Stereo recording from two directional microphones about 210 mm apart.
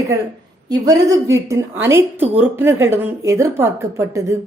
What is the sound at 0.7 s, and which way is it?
A woman's voice, 15° right (ahead or behind).